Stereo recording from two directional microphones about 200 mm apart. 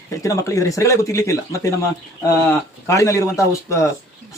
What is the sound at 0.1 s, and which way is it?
A man's voice, 15° left (ahead or behind).